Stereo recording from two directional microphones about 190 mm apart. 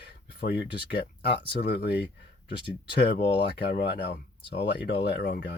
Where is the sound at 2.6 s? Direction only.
25° left (ahead or behind).